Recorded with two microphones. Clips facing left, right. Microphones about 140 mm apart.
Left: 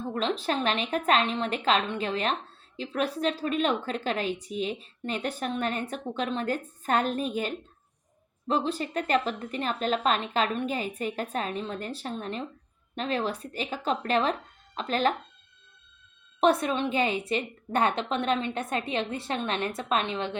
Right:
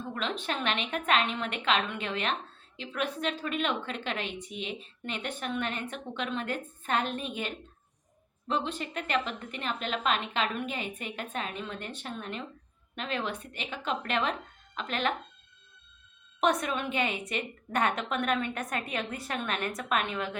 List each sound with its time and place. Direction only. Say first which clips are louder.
0.1 s a woman's voice: left 6 dB; 35° left (ahead or behind)
16.4 s a woman's voice: left 4 dB; 30° left (ahead or behind)